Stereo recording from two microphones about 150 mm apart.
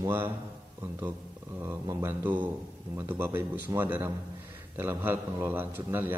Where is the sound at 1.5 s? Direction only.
15° right (ahead or behind).